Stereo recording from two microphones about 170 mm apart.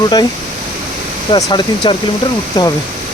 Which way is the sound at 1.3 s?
25° left (ahead or behind).